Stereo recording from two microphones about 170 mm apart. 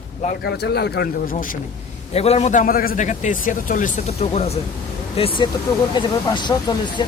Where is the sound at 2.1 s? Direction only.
40° left (ahead or behind).